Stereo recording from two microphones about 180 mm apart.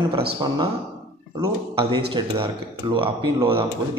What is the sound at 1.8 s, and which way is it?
Speech, 30° right (ahead or behind).